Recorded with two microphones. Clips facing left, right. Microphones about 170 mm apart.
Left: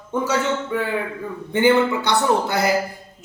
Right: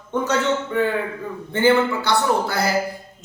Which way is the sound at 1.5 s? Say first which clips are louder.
Left 1 dB; 20° left (ahead or behind).